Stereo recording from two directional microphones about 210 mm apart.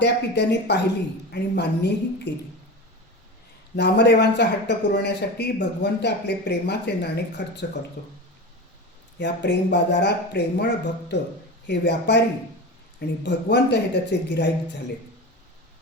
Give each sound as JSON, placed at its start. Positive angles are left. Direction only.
{"t": 0.0, "sound": "a man's voice", "side_deg": 55}
{"t": 3.8, "sound": "a man's voice", "side_deg": 55}
{"t": 9.1, "sound": "speech", "side_deg": 55}